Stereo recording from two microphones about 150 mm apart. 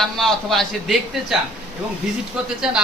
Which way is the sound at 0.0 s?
Centre (ahead or behind).